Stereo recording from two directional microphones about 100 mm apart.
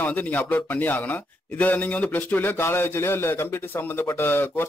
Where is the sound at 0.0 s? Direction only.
15° left (ahead or behind).